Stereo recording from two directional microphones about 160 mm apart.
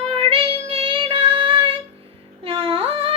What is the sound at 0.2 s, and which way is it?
Child singing, 35° right (ahead or behind).